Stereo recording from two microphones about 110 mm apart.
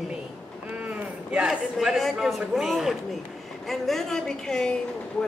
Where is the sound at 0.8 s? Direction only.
10° right (ahead or behind).